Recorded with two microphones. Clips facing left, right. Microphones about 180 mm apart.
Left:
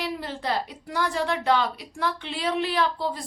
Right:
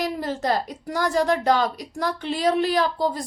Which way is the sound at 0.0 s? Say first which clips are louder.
Right 5 dB; 45° right (ahead or behind).